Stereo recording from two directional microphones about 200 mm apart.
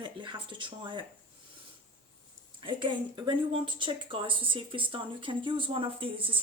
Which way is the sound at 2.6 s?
25° right (ahead or behind).